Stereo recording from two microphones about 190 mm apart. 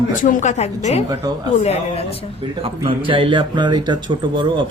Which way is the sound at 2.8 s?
25° right (ahead or behind).